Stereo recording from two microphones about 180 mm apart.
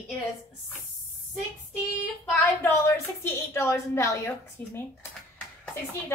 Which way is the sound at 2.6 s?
15° left (ahead or behind).